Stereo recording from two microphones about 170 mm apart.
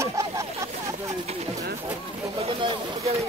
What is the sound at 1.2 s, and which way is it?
Speech, 35° right (ahead or behind).